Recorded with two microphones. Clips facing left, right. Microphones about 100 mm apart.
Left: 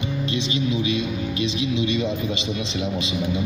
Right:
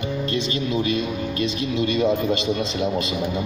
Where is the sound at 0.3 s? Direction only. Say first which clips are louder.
Left 1 dB; 45° right (ahead or behind).